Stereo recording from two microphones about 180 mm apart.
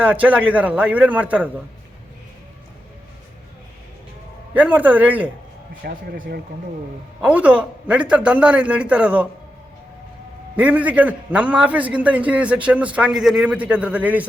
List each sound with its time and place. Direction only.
0.0 s a man's voice: 10° right (ahead or behind)
4.5 s a man's voice: 10° right (ahead or behind)
5.8 s speech: 50° right (ahead or behind)
7.2 s a man's voice: 5° right (ahead or behind)
10.6 s a man's voice: 10° right (ahead or behind)